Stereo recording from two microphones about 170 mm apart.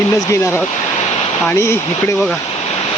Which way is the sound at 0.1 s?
15° left (ahead or behind).